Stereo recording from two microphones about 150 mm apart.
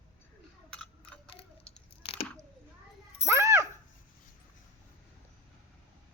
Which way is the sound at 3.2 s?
20° right (ahead or behind).